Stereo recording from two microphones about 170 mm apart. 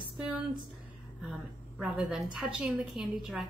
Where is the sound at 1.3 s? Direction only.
5° right (ahead or behind).